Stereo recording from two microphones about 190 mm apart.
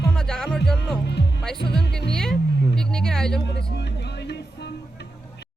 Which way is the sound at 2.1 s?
5° left (ahead or behind).